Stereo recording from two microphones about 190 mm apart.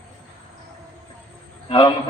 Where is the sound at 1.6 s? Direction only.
25° left (ahead or behind).